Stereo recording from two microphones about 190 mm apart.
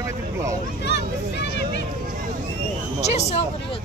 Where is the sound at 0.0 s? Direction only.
15° right (ahead or behind).